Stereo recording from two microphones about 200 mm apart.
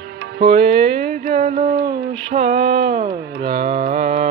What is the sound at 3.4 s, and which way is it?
Mantra, 50° right (ahead or behind).